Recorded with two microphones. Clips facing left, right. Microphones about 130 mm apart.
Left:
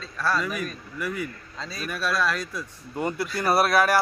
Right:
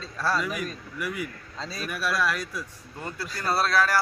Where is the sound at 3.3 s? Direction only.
15° left (ahead or behind).